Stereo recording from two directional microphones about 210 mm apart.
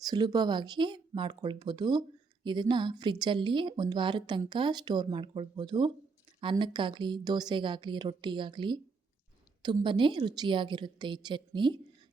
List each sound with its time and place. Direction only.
0.0 s speech: 20° right (ahead or behind)